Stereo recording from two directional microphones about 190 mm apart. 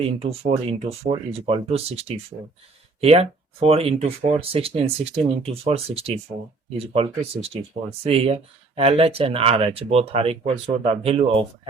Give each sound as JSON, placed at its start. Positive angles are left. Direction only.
{"t": 0.0, "sound": "speech", "side_deg": -30}